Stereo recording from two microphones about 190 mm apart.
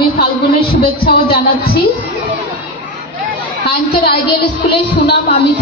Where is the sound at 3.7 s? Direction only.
55° left (ahead or behind).